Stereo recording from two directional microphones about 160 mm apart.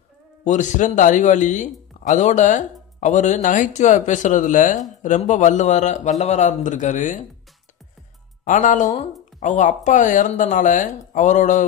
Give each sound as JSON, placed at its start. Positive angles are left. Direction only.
{"t": 0.4, "sound": "speech", "side_deg": 50}
{"t": 8.5, "sound": "speech", "side_deg": 50}